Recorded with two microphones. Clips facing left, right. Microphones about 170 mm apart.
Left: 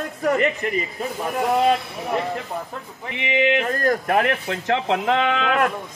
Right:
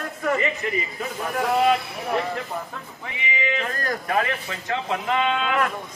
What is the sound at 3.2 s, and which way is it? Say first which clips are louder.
Speech: left 7 dB; 70° left (ahead or behind).